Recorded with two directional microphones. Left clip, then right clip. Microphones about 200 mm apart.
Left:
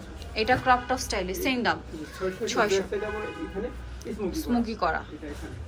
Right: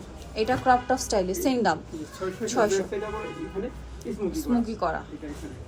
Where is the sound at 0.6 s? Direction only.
30° right (ahead or behind).